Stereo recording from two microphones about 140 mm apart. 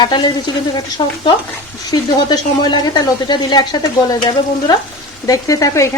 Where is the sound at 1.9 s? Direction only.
30° left (ahead or behind).